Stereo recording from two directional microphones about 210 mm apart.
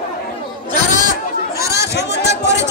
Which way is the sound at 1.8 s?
50° left (ahead or behind).